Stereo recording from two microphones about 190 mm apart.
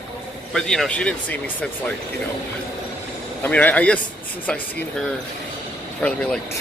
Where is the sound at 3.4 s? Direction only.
10° left (ahead or behind).